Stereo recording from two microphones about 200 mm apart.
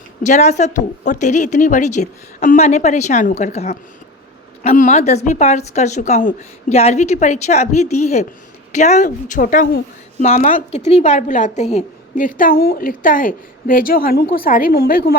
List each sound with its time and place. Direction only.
0.2 s a woman's voice: 35° left (ahead or behind)